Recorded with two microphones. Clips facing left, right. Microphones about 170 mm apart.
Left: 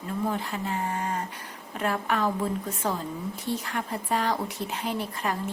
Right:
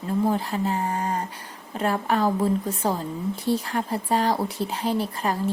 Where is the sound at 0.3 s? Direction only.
35° right (ahead or behind).